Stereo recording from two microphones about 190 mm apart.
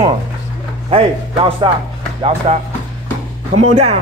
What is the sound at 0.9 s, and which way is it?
Speech, 30° right (ahead or behind).